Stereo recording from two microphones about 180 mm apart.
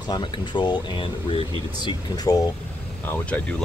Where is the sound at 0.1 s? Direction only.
25° left (ahead or behind).